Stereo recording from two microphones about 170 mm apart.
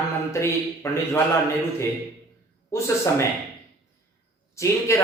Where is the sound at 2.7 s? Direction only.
15° left (ahead or behind).